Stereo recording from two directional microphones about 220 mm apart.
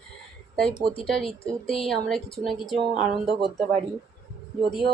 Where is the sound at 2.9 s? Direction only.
30° right (ahead or behind).